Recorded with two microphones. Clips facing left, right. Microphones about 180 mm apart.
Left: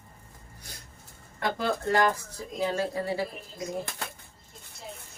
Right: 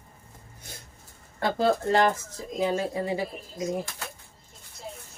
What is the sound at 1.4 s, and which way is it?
Speech, 30° right (ahead or behind).